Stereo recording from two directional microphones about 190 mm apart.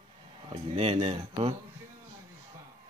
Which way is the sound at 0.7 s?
30° right (ahead or behind).